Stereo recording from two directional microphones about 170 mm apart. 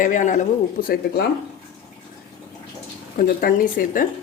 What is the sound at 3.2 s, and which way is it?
Speech, 55° left (ahead or behind).